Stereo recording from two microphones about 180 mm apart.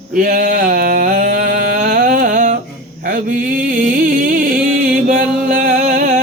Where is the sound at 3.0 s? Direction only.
50° right (ahead or behind).